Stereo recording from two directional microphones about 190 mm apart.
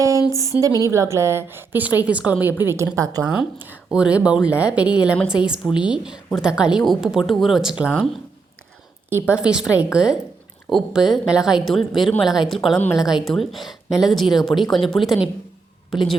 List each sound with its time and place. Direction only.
0.3 s a woman's voice: 15° right (ahead or behind)
3.2 s a woman's voice: 5° right (ahead or behind)
9.2 s a woman's voice: 5° right (ahead or behind)